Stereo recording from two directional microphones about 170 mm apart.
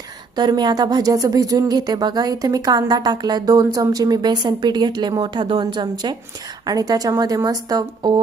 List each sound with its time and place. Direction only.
0.3 s speech: 25° right (ahead or behind)